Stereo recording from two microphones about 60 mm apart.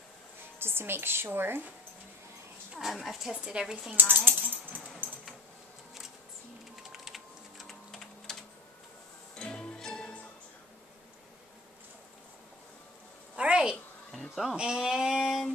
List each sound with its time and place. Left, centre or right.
0.6 s a woman's voice: right
2.8 s a woman's voice: centre
3.3 s a woman's voice: centre
3.9 s speech: right
5.0 s a sound: right
6.9 s typing: centre
9.4 s music: centre
13.4 s a sound: centre
14.2 s music: centre
14.6 s a sound: centre